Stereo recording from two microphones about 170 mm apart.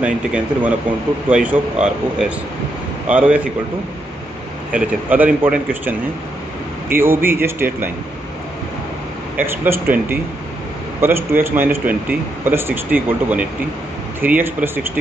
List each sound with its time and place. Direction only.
0.0 s speech: 5° right (ahead or behind)
4.7 s speech: 10° right (ahead or behind)
9.4 s speech: 10° right (ahead or behind)